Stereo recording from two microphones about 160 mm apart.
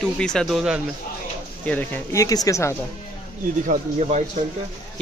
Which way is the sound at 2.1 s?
20° left (ahead or behind).